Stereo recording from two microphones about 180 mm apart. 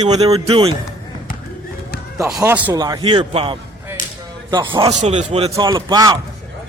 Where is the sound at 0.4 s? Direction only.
30° right (ahead or behind).